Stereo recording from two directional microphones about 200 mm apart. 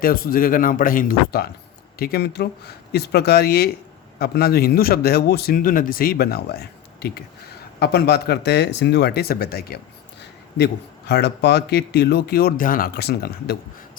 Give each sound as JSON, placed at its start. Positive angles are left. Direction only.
{"t": 0.0, "sound": "a man's voice", "side_deg": 45}